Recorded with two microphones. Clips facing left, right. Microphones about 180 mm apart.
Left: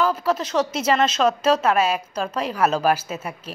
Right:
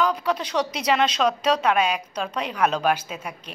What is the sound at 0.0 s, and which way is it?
A woman's voice, 5° left (ahead or behind).